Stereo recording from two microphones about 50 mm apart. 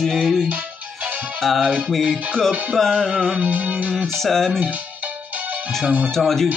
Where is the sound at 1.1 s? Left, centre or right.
Right.